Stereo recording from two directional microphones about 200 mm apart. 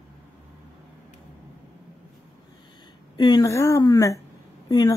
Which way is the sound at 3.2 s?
20° left (ahead or behind).